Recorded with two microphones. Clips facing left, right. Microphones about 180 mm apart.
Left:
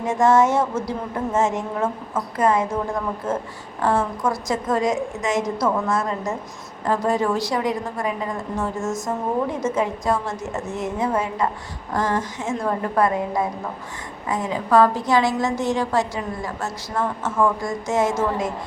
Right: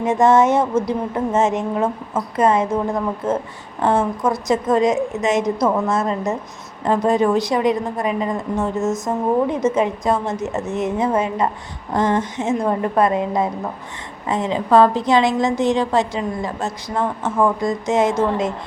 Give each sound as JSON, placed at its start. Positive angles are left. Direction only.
{"t": 0.0, "sound": "a woman's voice", "side_deg": -20}